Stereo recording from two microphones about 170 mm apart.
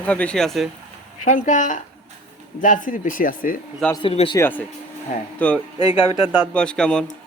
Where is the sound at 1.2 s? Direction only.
45° left (ahead or behind).